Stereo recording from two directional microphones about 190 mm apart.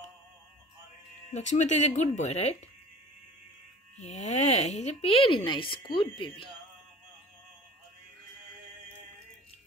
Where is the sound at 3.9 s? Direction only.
35° left (ahead or behind).